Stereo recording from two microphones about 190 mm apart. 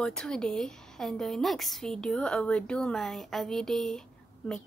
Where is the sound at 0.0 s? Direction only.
5° left (ahead or behind).